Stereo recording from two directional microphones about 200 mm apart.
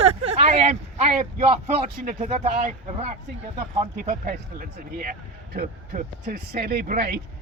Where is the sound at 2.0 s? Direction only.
40° right (ahead or behind).